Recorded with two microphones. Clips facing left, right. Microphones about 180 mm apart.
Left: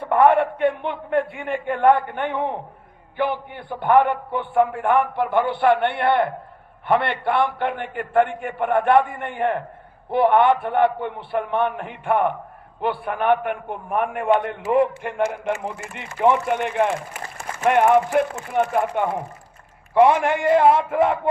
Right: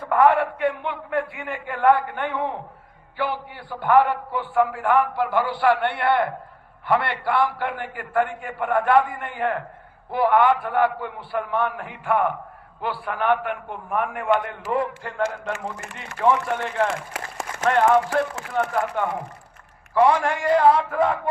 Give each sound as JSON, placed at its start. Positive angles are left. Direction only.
{"t": 0.0, "sound": "a man's voice", "side_deg": 25}
{"t": 3.5, "sound": "a man's voice", "side_deg": 20}
{"t": 17.2, "sound": "a sound", "side_deg": -90}
{"t": 17.7, "sound": "a man's voice", "side_deg": 20}
{"t": 19.9, "sound": "a man's voice", "side_deg": 20}